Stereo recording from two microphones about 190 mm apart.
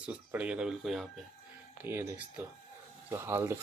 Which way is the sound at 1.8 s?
10° right (ahead or behind).